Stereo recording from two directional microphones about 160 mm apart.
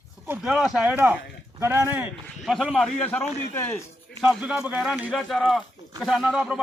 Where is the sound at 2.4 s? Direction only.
Centre (ahead or behind); by 3.8 s 15° left (ahead or behind).